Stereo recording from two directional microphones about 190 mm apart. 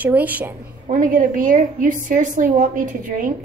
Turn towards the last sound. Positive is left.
turn(degrees=-45)  # may be behind; listen again after turning